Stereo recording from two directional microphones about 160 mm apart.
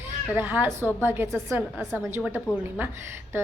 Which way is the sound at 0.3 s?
10° right (ahead or behind).